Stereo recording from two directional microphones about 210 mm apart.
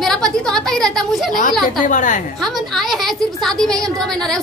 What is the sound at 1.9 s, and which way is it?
Speech, 35° left (ahead or behind).